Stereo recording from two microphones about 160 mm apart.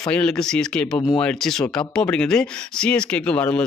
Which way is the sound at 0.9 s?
30° left (ahead or behind).